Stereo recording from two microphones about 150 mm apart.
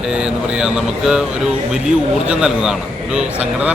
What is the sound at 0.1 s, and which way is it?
Speech, 5° right (ahead or behind).